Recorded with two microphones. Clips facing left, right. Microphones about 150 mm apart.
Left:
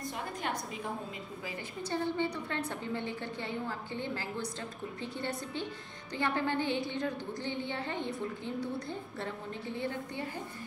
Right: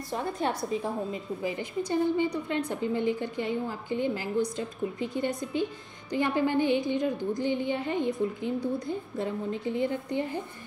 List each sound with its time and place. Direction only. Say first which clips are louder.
0.1 s a woman's voice: right 11 dB; 35° right (ahead or behind)
1.4 s a woman's voice: right 9 dB; 15° right (ahead or behind)